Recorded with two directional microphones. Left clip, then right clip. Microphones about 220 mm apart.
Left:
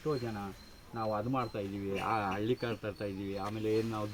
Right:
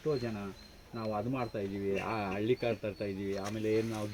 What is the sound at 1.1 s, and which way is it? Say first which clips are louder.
Speech: even; 15° left (ahead or behind).